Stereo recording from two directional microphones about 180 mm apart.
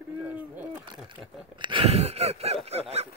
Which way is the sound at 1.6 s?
30° right (ahead or behind).